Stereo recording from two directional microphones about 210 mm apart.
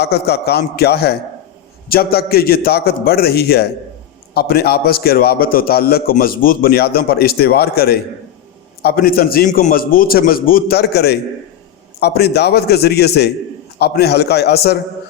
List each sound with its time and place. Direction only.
0.0 s a man's voice: 50° left (ahead or behind)